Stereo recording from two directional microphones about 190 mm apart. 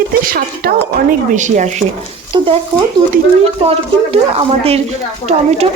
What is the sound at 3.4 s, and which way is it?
Speech, 30° right (ahead or behind).